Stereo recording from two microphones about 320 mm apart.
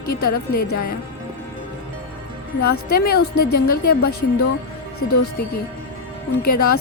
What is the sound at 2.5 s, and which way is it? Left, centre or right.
Speech, left.